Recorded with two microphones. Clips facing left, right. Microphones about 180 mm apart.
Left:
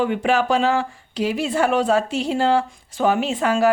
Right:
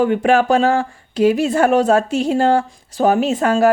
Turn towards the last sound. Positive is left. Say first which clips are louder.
# right 4 dB
turn(degrees=-45)  # may be behind; listen again after turning